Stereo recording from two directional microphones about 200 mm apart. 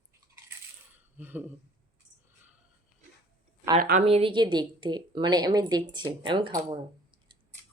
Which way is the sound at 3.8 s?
45° right (ahead or behind).